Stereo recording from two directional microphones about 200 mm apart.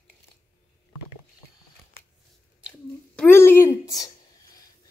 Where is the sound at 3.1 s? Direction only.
10° left (ahead or behind).